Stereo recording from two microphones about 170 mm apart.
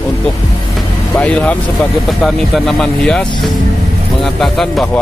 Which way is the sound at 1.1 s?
5° left (ahead or behind).